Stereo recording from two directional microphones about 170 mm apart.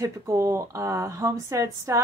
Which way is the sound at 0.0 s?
15° right (ahead or behind).